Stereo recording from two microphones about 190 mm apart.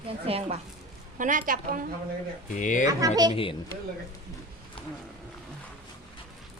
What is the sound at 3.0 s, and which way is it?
Speech, 20° right (ahead or behind).